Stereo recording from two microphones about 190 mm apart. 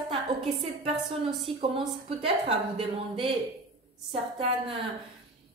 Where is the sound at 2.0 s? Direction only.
30° right (ahead or behind).